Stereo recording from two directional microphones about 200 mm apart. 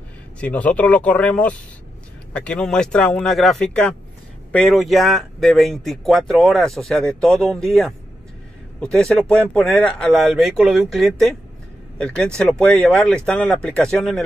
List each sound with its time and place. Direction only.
0.4 s speech: 5° left (ahead or behind)